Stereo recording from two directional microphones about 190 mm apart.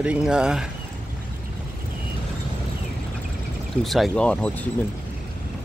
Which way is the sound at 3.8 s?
Centre (ahead or behind).